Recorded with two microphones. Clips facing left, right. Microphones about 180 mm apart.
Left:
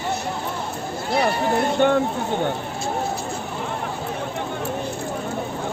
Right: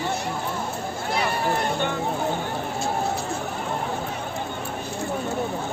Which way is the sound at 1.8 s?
50° left (ahead or behind).